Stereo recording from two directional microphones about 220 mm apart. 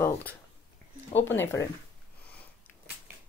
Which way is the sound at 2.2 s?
5° left (ahead or behind).